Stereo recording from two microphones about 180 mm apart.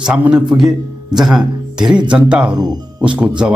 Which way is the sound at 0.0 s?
5° right (ahead or behind).